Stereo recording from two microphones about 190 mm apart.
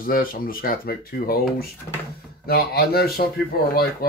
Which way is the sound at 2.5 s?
55° left (ahead or behind).